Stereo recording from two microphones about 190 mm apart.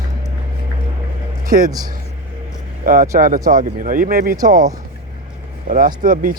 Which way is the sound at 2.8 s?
45° right (ahead or behind).